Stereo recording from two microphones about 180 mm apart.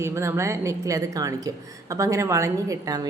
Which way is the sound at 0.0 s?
15° right (ahead or behind).